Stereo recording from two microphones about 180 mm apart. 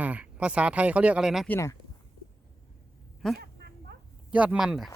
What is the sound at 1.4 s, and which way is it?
Speech, 15° left (ahead or behind).